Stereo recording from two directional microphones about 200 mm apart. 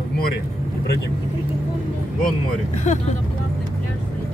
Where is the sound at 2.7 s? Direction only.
35° left (ahead or behind).